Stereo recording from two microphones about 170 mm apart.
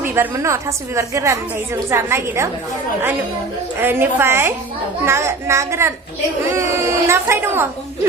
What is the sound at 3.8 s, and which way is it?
A woman's voice, 15° right (ahead or behind).